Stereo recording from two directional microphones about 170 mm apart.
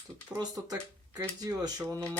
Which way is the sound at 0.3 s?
20° right (ahead or behind).